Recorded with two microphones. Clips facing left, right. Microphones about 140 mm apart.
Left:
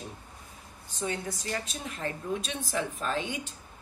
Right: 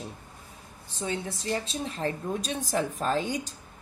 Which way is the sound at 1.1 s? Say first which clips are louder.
Right 3 dB; 25° right (ahead or behind).